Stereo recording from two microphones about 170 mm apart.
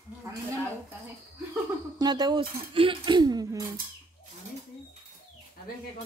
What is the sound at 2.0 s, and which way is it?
Speech, 25° right (ahead or behind).